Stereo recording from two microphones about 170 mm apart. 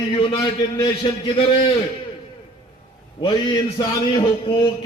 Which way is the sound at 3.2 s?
25° left (ahead or behind).